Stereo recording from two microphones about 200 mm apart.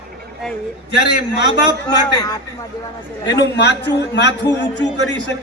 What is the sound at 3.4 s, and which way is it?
A man's voice, 60° left (ahead or behind).